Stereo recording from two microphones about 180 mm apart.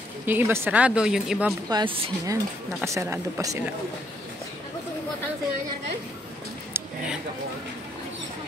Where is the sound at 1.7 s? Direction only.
25° right (ahead or behind).